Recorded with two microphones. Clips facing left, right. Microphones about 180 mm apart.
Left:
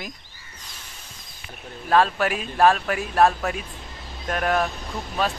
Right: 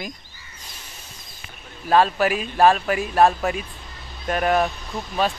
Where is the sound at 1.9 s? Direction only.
Centre (ahead or behind).